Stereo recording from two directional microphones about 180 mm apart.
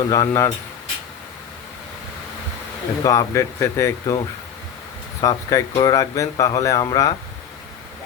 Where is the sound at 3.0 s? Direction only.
20° left (ahead or behind).